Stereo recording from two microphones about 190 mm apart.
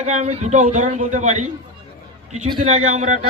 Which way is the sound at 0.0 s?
35° right (ahead or behind).